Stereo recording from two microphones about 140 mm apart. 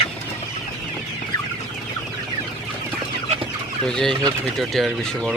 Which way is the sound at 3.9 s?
5° left (ahead or behind).